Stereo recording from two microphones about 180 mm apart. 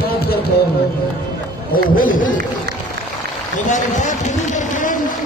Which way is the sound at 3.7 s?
45° left (ahead or behind).